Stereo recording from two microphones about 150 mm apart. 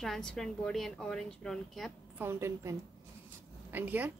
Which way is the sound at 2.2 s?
15° right (ahead or behind).